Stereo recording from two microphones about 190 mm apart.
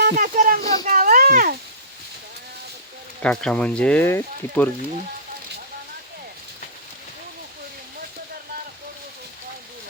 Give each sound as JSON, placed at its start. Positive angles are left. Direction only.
{"t": 0.0, "sound": "speech", "side_deg": -50}
{"t": 0.6, "sound": "a child's voice", "side_deg": 20}
{"t": 0.9, "sound": "a sound", "side_deg": -45}
{"t": 3.2, "sound": "speech", "side_deg": 5}